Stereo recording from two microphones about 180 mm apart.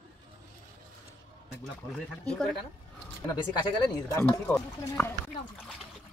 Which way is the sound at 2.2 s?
5° left (ahead or behind).